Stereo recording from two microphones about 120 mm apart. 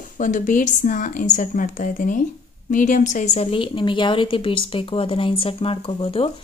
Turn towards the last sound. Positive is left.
turn(degrees=50)  # may be behind; listen again after turning